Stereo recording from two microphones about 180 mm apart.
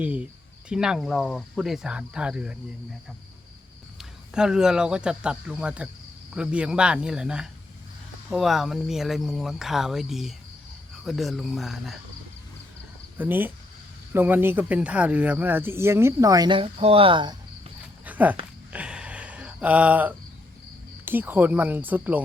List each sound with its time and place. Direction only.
0.0 s speech: 10° right (ahead or behind)
4.4 s speech: 5° right (ahead or behind)
13.1 s speech: 10° right (ahead or behind); by 17.3 s 25° right (ahead or behind)
18.0 s a sound: 10° right (ahead or behind)
21.0 s speech: 10° right (ahead or behind)